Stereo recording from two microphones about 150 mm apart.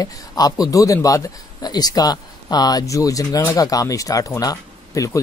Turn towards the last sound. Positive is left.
turn(degrees=25)  # may be behind; listen again after turning